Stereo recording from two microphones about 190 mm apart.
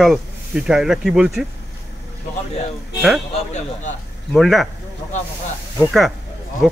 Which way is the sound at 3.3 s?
40° left (ahead or behind).